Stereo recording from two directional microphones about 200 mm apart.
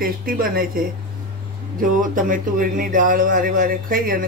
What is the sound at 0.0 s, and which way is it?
Speech, 45° right (ahead or behind).